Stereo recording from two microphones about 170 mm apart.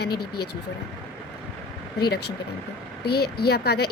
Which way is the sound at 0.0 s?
70° left (ahead or behind).